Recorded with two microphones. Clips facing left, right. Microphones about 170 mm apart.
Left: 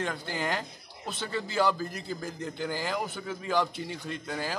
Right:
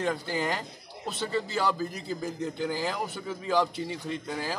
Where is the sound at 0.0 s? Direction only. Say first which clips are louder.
Right 3 dB; centre (ahead or behind).